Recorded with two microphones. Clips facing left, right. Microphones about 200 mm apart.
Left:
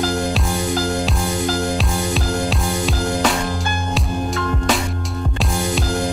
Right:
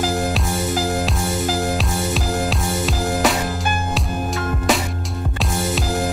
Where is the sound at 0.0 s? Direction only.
5° right (ahead or behind).